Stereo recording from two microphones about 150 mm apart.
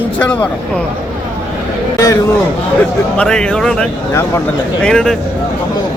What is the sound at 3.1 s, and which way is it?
Speech, 5° left (ahead or behind).